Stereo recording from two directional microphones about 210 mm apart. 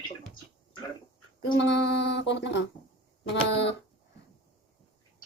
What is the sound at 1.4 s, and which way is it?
Speech, 60° left (ahead or behind).